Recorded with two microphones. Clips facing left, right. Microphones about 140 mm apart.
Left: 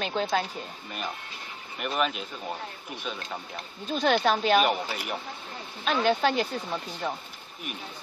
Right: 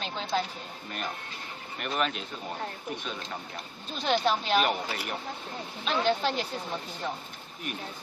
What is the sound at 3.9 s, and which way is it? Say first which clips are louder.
Speech: left 3 dB; 55° left (ahead or behind).